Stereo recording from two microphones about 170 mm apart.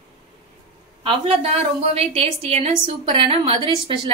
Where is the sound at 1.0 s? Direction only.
35° right (ahead or behind).